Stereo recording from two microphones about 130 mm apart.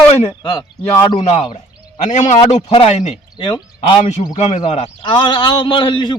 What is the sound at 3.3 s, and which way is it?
Speech, 35° left (ahead or behind).